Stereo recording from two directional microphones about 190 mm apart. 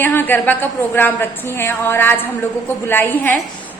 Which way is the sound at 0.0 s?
10° left (ahead or behind).